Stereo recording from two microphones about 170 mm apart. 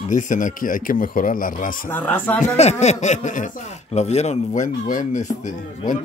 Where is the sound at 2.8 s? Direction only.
40° left (ahead or behind).